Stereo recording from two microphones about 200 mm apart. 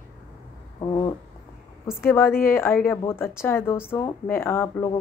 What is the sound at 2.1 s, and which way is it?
Speech, 10° left (ahead or behind).